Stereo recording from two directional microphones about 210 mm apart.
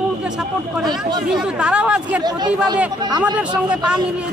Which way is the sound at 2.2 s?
20° right (ahead or behind).